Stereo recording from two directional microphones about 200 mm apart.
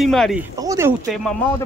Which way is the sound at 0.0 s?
Centre (ahead or behind).